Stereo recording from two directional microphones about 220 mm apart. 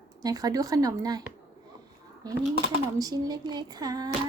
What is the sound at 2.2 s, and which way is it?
Speech, 15° right (ahead or behind).